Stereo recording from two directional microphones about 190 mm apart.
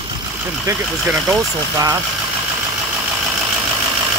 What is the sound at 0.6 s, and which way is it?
Speech, 15° right (ahead or behind).